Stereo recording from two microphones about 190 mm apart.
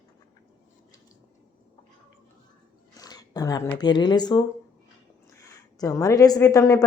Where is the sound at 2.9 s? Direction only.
20° left (ahead or behind).